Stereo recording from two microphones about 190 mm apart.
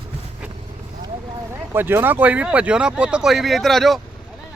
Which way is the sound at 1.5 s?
10° right (ahead or behind).